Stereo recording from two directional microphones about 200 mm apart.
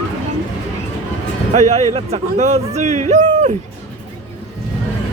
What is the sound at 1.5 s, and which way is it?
Speech, 35° right (ahead or behind).